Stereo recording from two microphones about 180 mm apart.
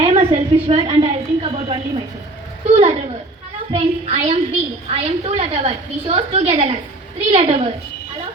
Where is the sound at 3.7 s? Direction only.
30° right (ahead or behind).